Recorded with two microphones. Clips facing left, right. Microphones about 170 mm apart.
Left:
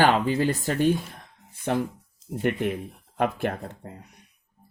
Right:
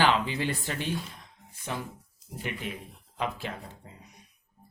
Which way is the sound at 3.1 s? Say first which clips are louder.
Left 8 dB; 55° left (ahead or behind).